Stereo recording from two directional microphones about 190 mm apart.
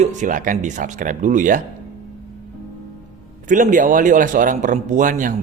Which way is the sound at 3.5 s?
45° right (ahead or behind).